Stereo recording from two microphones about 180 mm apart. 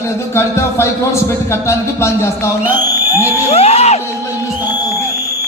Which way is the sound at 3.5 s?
35° left (ahead or behind).